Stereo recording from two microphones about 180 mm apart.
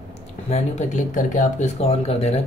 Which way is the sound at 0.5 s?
40° left (ahead or behind).